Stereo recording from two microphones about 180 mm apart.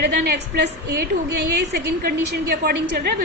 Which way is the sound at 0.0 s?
65° right (ahead or behind).